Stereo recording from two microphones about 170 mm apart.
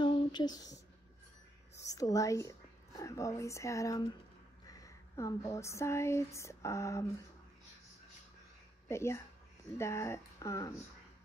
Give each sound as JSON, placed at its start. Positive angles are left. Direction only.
{"t": 0.0, "sound": "a sound", "side_deg": 25}
{"t": 1.8, "sound": "a woman's voice", "side_deg": 20}
{"t": 8.8, "sound": "speech", "side_deg": 15}